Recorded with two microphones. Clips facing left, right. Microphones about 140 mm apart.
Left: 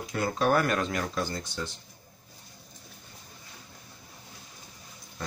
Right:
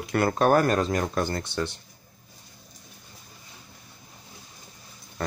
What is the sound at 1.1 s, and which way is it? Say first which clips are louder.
Speech: right 5 dB; 60° right (ahead or behind).